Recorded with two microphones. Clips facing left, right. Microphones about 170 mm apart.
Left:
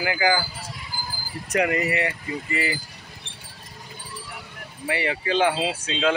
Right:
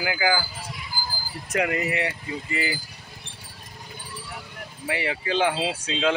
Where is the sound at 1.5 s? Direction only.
5° right (ahead or behind).